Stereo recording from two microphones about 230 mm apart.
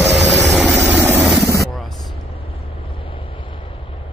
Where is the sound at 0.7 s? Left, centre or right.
Right.